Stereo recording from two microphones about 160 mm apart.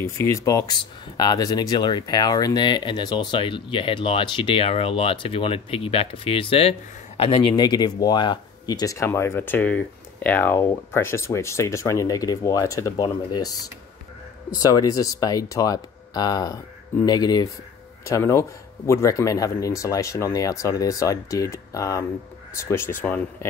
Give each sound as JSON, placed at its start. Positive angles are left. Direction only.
{"t": 0.0, "sound": "speech", "side_deg": 20}